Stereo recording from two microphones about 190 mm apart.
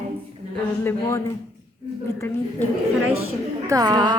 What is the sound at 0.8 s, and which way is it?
Speech, 15° left (ahead or behind).